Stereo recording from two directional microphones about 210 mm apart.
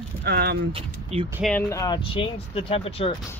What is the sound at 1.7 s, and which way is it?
Speech, 15° left (ahead or behind).